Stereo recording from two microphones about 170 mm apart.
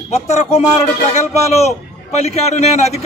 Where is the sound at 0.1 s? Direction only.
40° left (ahead or behind).